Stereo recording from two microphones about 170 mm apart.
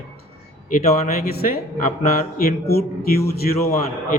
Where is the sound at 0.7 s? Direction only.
45° left (ahead or behind).